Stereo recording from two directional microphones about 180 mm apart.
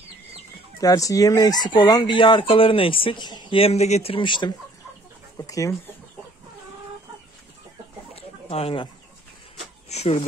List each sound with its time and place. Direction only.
0.7 s speech: 20° left (ahead or behind)
8.1 s chicken: 35° left (ahead or behind)
9.8 s speech: 35° left (ahead or behind)